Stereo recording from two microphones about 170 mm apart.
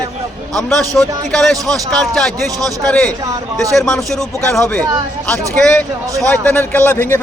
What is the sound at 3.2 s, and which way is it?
Speech, 20° right (ahead or behind).